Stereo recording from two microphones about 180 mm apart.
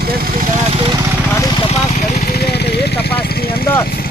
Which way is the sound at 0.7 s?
30° right (ahead or behind).